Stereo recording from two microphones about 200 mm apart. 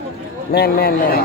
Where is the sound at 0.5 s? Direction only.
50° left (ahead or behind).